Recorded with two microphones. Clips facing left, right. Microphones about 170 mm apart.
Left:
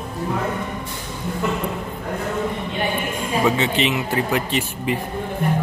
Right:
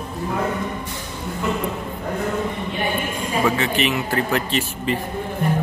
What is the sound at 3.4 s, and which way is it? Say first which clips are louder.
Speech: left 1 dB; 20° left (ahead or behind).